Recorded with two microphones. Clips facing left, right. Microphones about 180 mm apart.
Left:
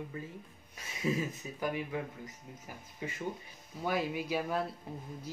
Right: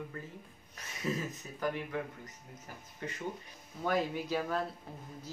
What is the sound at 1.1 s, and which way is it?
Speech, 10° left (ahead or behind).